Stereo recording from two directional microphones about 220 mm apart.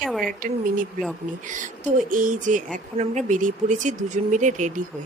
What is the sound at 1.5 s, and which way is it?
A woman's voice, 35° right (ahead or behind).